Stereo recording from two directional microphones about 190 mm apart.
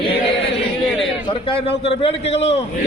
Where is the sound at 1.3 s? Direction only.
30° left (ahead or behind).